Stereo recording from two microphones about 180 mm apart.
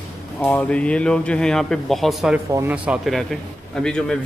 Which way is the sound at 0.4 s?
10° left (ahead or behind).